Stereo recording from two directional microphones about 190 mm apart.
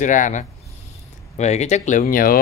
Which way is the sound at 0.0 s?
40° left (ahead or behind).